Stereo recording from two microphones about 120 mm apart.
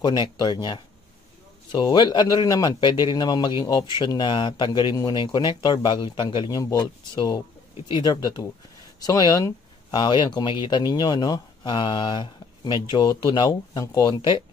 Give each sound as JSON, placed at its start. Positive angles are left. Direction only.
{"t": 0.0, "sound": "a man's voice", "side_deg": 35}
{"t": 1.7, "sound": "a man's voice", "side_deg": 40}